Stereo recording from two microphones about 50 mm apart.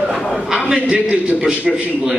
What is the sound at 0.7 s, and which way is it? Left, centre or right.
Speech, right.